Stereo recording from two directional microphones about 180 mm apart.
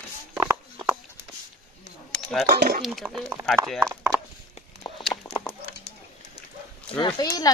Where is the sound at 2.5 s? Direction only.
55° right (ahead or behind).